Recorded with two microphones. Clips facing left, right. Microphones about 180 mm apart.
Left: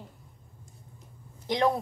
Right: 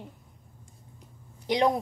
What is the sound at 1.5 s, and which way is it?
Speech, 15° right (ahead or behind).